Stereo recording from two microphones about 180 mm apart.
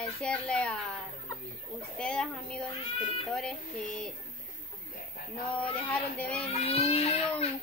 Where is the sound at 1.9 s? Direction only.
5° left (ahead or behind).